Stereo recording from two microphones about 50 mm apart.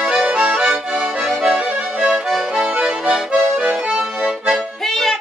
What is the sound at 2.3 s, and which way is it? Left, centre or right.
Accordion, centre.